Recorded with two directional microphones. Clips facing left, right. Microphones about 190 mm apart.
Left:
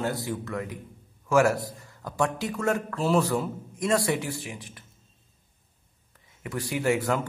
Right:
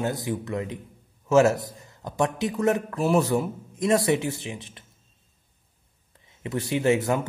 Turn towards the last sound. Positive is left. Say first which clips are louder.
# right 3 dB
turn(degrees=-20)  # may be behind; listen again after turning